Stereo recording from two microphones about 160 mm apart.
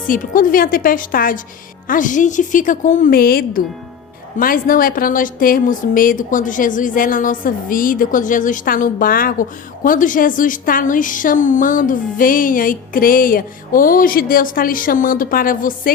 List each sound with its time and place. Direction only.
0.1 s a woman's voice: 60° left (ahead or behind)